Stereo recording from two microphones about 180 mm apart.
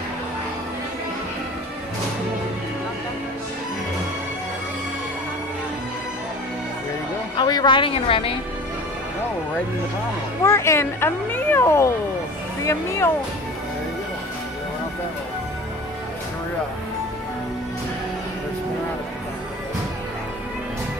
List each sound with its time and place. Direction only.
7.3 s speech: 25° left (ahead or behind)
10.4 s a child's voice: 15° left (ahead or behind)